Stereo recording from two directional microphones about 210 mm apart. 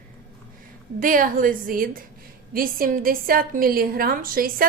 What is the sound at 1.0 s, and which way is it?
A woman's voice, 40° right (ahead or behind).